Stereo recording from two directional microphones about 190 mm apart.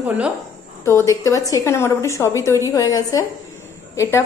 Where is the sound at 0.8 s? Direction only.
15° left (ahead or behind).